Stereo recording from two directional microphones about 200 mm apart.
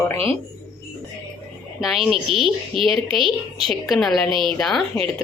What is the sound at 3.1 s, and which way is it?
Speech, 25° right (ahead or behind).